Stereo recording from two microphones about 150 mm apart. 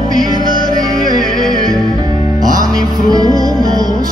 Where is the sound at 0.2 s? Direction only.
25° right (ahead or behind).